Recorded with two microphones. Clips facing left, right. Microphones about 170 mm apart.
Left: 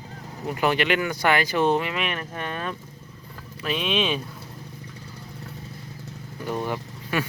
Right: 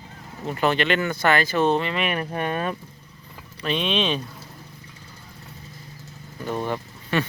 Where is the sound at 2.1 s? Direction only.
15° right (ahead or behind).